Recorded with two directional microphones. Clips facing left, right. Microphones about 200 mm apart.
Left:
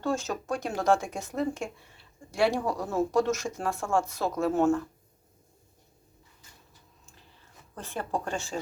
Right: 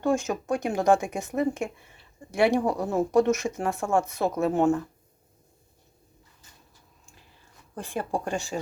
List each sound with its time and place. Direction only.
0.0 s speech: 15° right (ahead or behind)
7.8 s speech: 15° right (ahead or behind)